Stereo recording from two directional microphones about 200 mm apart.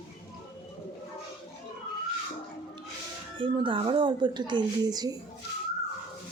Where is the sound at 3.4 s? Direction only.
25° right (ahead or behind).